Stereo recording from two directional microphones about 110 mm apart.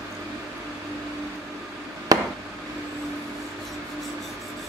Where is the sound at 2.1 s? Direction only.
35° right (ahead or behind).